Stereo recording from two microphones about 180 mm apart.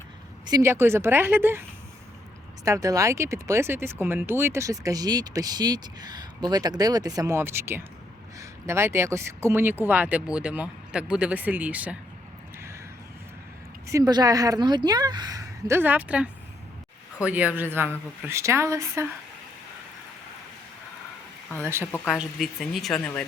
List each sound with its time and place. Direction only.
0.4 s speech: 20° right (ahead or behind)
2.6 s speech: 20° right (ahead or behind)
13.8 s a woman's voice: 20° right (ahead or behind)
21.6 s speech: 15° right (ahead or behind)